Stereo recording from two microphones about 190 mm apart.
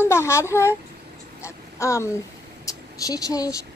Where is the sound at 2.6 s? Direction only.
20° left (ahead or behind).